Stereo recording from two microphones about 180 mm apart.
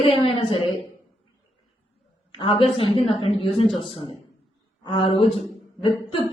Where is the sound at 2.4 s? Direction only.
30° left (ahead or behind).